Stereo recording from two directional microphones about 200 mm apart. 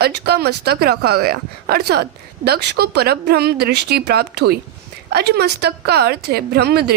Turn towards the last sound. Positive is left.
turn(degrees=-55)  # may be behind; listen again after turning